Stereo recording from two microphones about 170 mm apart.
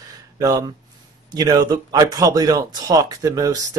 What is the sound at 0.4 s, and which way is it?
Speech, 20° right (ahead or behind).